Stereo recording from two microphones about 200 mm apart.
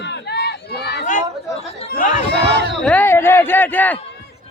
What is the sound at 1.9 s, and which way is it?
Speech, 40° left (ahead or behind).